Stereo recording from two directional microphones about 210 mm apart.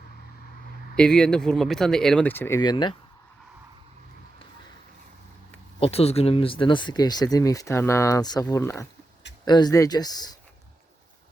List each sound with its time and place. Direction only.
0.9 s speech: 5° left (ahead or behind); by 2.9 s 20° left (ahead or behind)
5.8 s speech: 30° left (ahead or behind)